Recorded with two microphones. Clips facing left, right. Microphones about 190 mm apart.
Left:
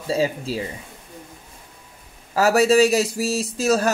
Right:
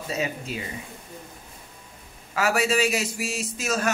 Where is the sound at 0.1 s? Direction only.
30° left (ahead or behind).